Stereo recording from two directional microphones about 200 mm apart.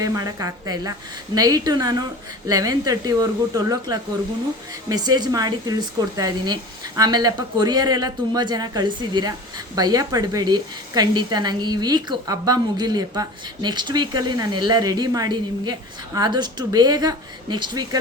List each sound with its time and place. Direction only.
0.0 s a woman's voice: 20° right (ahead or behind)